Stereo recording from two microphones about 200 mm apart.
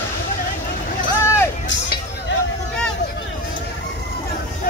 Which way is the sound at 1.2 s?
15° left (ahead or behind).